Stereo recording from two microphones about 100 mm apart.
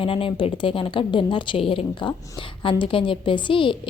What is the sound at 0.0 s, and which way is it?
A woman's voice, 60° left (ahead or behind).